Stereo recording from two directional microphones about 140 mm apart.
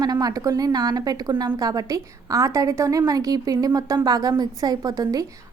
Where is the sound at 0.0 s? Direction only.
25° right (ahead or behind).